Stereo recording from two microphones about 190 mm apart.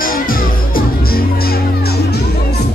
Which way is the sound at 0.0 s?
50° left (ahead or behind).